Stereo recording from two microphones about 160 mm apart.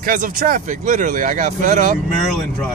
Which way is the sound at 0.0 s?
60° right (ahead or behind).